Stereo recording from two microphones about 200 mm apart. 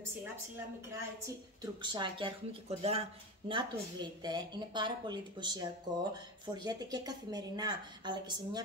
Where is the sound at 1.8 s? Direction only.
20° right (ahead or behind).